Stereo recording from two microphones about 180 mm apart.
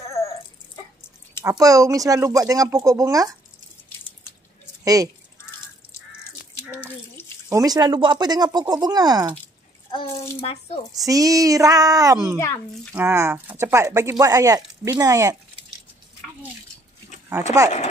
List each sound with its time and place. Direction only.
1.4 s speech: 15° right (ahead or behind)
4.8 s speech: 20° right (ahead or behind)
6.6 s water: 10° right (ahead or behind)
7.4 s speech: 20° right (ahead or behind)
10.4 s speech: 35° left (ahead or behind)
11.1 s speech: 20° right (ahead or behind)
17.3 s speech: 15° right (ahead or behind)